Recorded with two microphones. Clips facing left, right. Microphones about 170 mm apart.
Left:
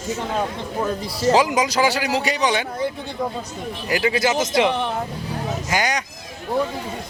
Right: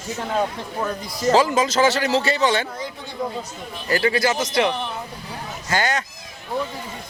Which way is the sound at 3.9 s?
15° left (ahead or behind).